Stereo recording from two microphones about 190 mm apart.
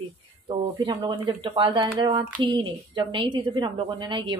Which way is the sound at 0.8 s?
25° right (ahead or behind).